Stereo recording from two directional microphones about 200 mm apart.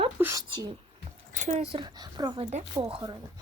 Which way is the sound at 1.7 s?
20° right (ahead or behind).